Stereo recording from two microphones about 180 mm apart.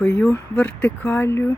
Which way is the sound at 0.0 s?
5° left (ahead or behind).